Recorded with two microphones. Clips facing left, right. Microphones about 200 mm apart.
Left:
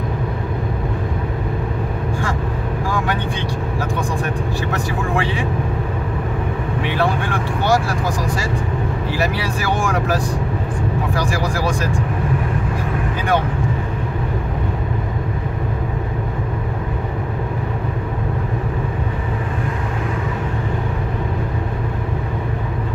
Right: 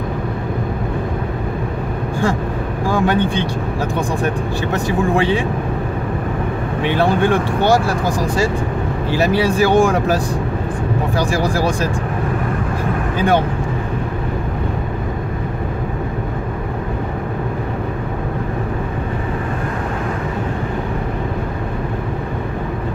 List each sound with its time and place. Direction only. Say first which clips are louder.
2.9 s speech: right 8 dB; 30° right (ahead or behind)
5.1 s speech: right 5 dB; 25° right (ahead or behind)
6.8 s speech: right 6 dB; 25° right (ahead or behind)
9.1 s speech: right 9 dB; 25° right (ahead or behind)